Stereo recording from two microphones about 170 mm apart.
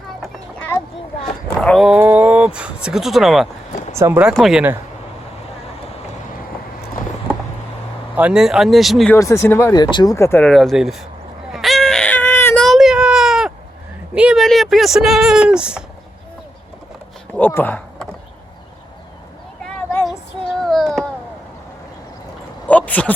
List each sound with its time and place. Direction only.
1.6 s speech: centre (ahead or behind)
3.9 s speech: 15° right (ahead or behind)
8.1 s speech: 5° right (ahead or behind)
9.1 s speech: 15° left (ahead or behind); by 11.0 s centre (ahead or behind)
11.5 s a sound: centre (ahead or behind)
12.6 s baby cry: centre (ahead or behind)
14.2 s speech: 5° right (ahead or behind)
17.3 s speech: 10° left (ahead or behind)
19.6 s a sound: 10° left (ahead or behind)
20.1 s child singing: centre (ahead or behind)
22.6 s a sound: 10° left (ahead or behind)